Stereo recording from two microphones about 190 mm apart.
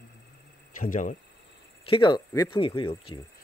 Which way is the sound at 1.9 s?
25° left (ahead or behind).